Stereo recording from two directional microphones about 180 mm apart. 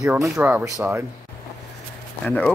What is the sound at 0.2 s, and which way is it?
Speech, 10° right (ahead or behind).